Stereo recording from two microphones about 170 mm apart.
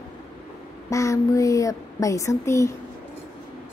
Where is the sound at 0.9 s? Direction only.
20° left (ahead or behind).